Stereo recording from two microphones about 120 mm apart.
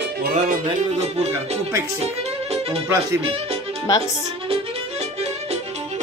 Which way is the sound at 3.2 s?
55° right (ahead or behind).